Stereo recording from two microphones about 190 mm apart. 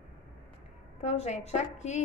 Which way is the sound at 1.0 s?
35° left (ahead or behind).